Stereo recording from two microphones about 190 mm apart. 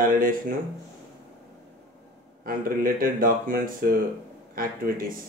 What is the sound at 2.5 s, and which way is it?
Speech, 50° right (ahead or behind).